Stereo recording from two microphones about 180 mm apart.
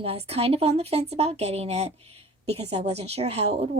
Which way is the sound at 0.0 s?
35° right (ahead or behind).